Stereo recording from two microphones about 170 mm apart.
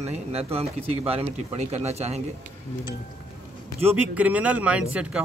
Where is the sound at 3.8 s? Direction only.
10° right (ahead or behind).